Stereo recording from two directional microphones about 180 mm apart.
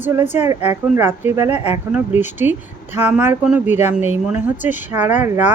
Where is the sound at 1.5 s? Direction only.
35° left (ahead or behind).